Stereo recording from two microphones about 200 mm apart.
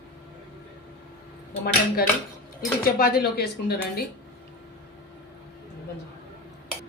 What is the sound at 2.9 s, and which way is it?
A woman's voice, 50° left (ahead or behind).